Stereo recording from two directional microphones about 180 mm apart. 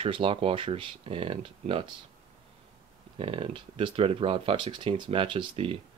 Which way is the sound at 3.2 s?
30° right (ahead or behind).